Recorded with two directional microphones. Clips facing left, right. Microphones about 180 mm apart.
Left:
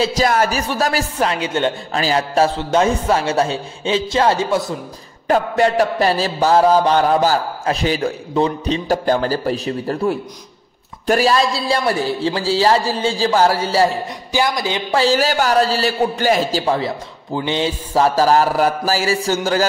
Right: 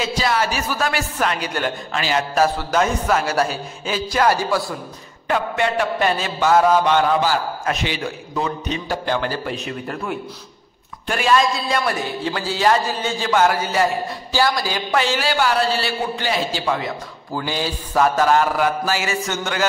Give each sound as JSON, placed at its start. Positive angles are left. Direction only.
{"t": 0.0, "sound": "a man's voice", "side_deg": 45}
{"t": 1.9, "sound": "a man's voice", "side_deg": 35}
{"t": 5.3, "sound": "a man's voice", "side_deg": 40}
{"t": 14.3, "sound": "a man's voice", "side_deg": 20}
{"t": 17.3, "sound": "a man's voice", "side_deg": 20}